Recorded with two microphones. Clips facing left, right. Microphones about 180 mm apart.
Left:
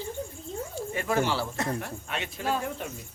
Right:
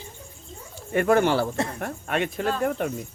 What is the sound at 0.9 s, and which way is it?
Speech, 60° right (ahead or behind).